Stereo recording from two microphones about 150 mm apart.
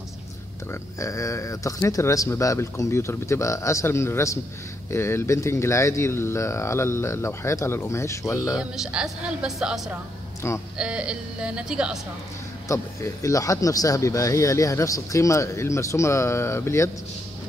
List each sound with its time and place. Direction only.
0.9 s speech: 20° left (ahead or behind)
8.5 s speech: 5° right (ahead or behind)
12.6 s speech: 20° left (ahead or behind)